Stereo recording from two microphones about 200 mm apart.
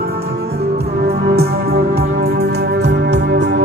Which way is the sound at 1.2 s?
50° right (ahead or behind).